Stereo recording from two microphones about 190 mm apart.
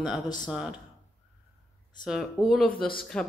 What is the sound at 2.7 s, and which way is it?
Speech, 50° left (ahead or behind).